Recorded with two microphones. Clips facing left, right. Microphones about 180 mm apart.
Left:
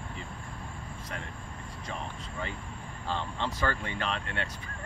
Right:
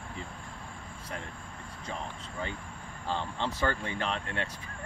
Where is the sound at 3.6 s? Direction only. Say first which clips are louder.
Right 1 dB; 30° right (ahead or behind).